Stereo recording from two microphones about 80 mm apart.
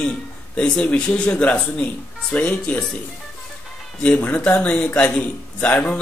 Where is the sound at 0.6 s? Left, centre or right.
Centre.